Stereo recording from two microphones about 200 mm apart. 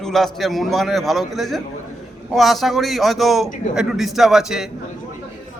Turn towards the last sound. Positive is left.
turn(degrees=0)  # may be behind; listen again after turning